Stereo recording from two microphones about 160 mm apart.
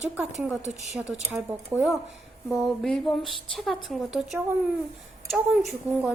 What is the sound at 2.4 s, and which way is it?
Speech, centre (ahead or behind).